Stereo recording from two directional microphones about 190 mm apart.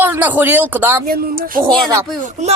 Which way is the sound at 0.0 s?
10° right (ahead or behind).